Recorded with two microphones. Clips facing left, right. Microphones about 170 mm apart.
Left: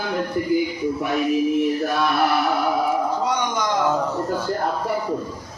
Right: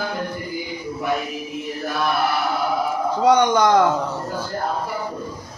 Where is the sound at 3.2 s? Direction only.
65° right (ahead or behind).